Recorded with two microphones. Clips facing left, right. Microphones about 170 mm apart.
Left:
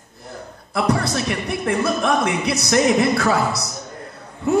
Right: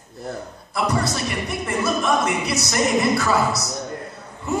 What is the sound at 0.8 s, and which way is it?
Speech, 60° left (ahead or behind).